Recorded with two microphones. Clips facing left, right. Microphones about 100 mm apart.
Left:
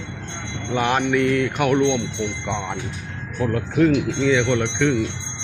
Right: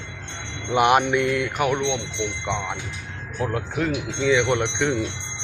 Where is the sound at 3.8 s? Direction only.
10° right (ahead or behind).